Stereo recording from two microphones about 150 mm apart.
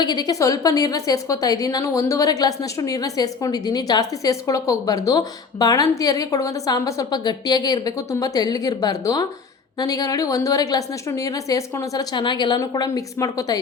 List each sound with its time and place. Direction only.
0.0 s a woman's voice: 25° left (ahead or behind)